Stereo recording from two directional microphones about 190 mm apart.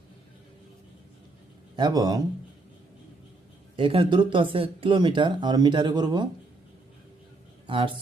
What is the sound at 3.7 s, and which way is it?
Speech, 25° right (ahead or behind).